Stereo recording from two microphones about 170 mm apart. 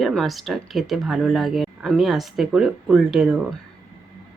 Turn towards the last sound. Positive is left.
turn(degrees=-5)  # may be behind; listen again after turning